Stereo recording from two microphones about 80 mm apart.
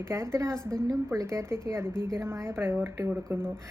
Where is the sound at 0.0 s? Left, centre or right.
Right.